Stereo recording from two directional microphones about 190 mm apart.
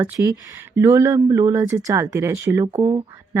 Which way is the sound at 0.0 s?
15° right (ahead or behind).